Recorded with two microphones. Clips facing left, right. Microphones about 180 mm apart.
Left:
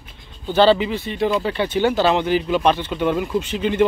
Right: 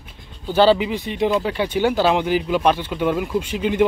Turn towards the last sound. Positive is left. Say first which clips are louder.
# even
turn(degrees=-10)  # may be behind; listen again after turning